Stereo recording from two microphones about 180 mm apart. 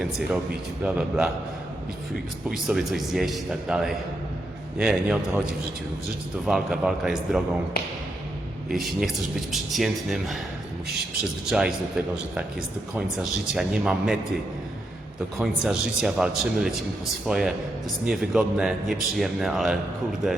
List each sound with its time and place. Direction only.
0.0 s speech: centre (ahead or behind)
2.5 s speech: centre (ahead or behind)
6.4 s speech: centre (ahead or behind)
7.8 s speech: 55° left (ahead or behind)
8.7 s speech: centre (ahead or behind)
11.4 s speech: 5° right (ahead or behind)
13.5 s speech: 5° right (ahead or behind)
15.4 s speech: centre (ahead or behind)